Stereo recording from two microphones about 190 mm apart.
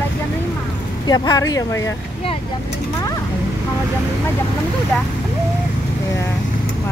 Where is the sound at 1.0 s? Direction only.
20° left (ahead or behind).